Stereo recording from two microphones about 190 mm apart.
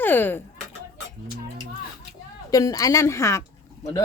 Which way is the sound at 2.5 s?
20° left (ahead or behind).